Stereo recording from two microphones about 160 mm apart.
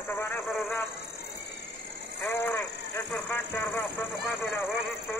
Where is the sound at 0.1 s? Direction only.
10° left (ahead or behind).